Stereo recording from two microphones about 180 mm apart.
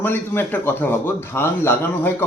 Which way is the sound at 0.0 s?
10° left (ahead or behind).